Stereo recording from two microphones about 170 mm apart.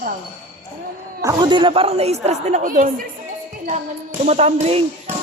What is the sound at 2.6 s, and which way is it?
Speech, 50° right (ahead or behind).